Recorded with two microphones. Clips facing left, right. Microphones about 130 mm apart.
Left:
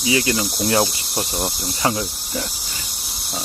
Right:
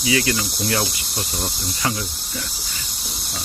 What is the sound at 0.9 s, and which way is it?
Cricket, 30° left (ahead or behind).